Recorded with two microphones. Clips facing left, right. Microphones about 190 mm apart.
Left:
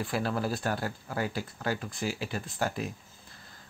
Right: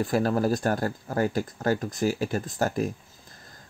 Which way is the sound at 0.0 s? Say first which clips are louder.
Right 7 dB; 40° right (ahead or behind).